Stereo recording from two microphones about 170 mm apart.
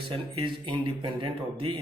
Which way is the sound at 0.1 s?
30° right (ahead or behind).